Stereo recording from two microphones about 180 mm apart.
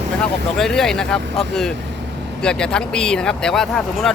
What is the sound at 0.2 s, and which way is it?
Speech, 5° left (ahead or behind).